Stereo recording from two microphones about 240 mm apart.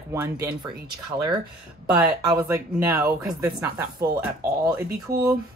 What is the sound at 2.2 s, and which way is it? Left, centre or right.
Speech, centre.